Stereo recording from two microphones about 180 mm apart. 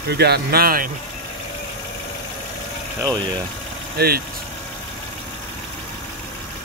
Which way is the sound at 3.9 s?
60° right (ahead or behind).